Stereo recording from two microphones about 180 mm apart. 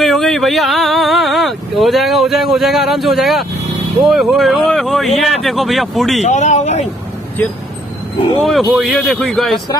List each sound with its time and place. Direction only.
0.0 s speech: centre (ahead or behind)
6.2 s speech: 40° left (ahead or behind)
8.4 s speech: centre (ahead or behind)